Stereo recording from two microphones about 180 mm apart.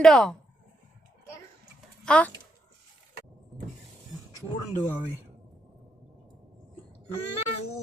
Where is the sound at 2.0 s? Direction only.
5° left (ahead or behind).